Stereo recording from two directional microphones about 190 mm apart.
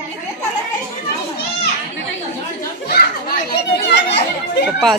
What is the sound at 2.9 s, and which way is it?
Children playing, 55° left (ahead or behind).